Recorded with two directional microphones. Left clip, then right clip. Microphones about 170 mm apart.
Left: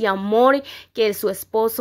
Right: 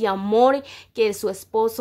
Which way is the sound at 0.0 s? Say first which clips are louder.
Left 1 dB; 10° left (ahead or behind).